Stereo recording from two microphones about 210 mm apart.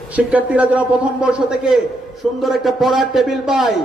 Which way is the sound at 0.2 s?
5° right (ahead or behind).